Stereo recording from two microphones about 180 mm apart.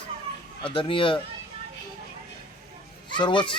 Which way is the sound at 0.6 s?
30° left (ahead or behind).